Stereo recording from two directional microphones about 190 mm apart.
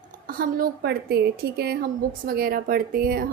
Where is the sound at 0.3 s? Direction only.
50° right (ahead or behind).